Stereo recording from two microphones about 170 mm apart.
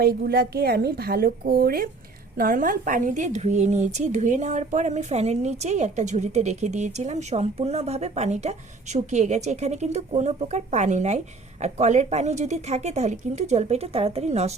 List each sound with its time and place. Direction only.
0.0 s a woman's voice: 65° right (ahead or behind); by 14.5 s 40° right (ahead or behind)